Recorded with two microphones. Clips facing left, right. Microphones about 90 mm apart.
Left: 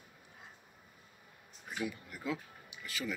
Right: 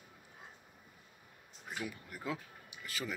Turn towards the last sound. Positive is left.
turn(degrees=-35)  # may be behind; listen again after turning